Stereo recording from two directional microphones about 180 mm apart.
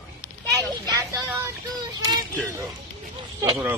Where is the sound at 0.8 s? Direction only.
20° right (ahead or behind).